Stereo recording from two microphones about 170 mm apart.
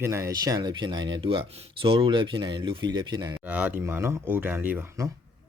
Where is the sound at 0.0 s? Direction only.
15° right (ahead or behind).